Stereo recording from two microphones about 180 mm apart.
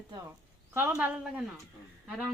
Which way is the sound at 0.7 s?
10° right (ahead or behind).